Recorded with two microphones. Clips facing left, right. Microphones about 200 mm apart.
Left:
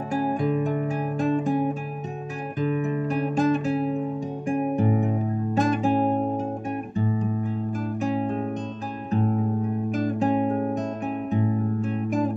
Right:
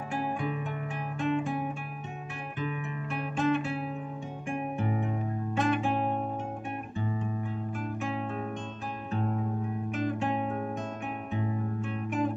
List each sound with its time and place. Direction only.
0.1 s guitar: 40° left (ahead or behind)
4.5 s music: 40° left (ahead or behind)
8.0 s music: 40° left (ahead or behind)
9.8 s music: 40° left (ahead or behind)